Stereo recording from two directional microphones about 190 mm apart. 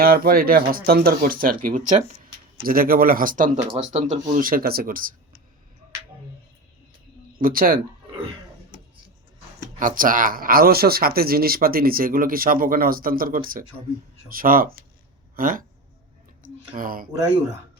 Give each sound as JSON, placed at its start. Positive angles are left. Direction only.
{"t": 0.0, "sound": "speech", "side_deg": -50}
{"t": 7.3, "sound": "speech", "side_deg": -50}
{"t": 9.7, "sound": "speech", "side_deg": -45}
{"t": 16.4, "sound": "a sound", "side_deg": -45}